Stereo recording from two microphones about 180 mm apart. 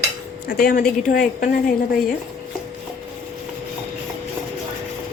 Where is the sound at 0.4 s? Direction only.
55° left (ahead or behind).